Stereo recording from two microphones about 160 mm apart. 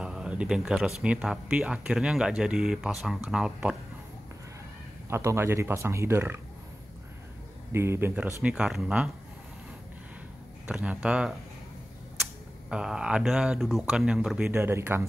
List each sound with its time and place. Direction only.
0.0 s speech: 5° right (ahead or behind)
5.1 s speech: 15° right (ahead or behind)
7.7 s speech: 15° right (ahead or behind)
10.7 s speech: 5° right (ahead or behind)
12.6 s speech: 5° right (ahead or behind)
14.5 s speech: 15° right (ahead or behind)